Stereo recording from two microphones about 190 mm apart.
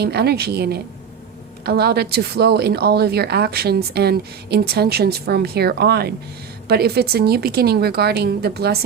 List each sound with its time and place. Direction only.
0.0 s a woman's voice: 60° right (ahead or behind)